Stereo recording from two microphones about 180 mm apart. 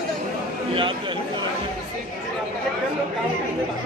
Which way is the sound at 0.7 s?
30° right (ahead or behind).